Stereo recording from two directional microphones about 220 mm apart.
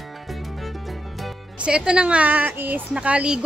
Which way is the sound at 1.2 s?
5° right (ahead or behind).